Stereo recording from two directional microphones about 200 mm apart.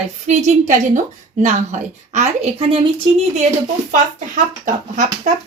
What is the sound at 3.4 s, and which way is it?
Speech, 40° right (ahead or behind).